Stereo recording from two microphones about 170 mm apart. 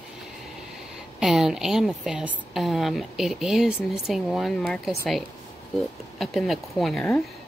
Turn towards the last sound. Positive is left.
turn(degrees=5)  # may be behind; listen again after turning